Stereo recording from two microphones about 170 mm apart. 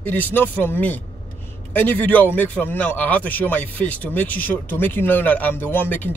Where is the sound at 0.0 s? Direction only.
10° left (ahead or behind).